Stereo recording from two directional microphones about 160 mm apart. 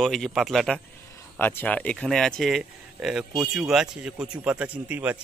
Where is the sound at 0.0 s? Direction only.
Centre (ahead or behind).